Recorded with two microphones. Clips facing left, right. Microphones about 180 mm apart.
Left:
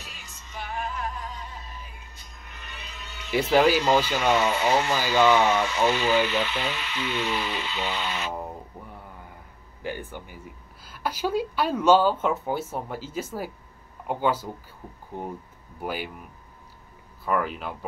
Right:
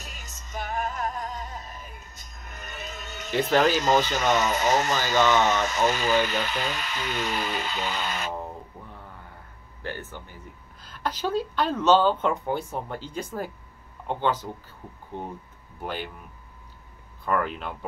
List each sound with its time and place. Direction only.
0.0 s music: 45° right (ahead or behind)
3.3 s a woman's voice: 10° left (ahead or behind)
3.7 s speech: 45° right (ahead or behind)
9.8 s a woman's voice: 15° left (ahead or behind)
15.8 s a woman's voice: 10° left (ahead or behind)
17.2 s speech: 5° left (ahead or behind)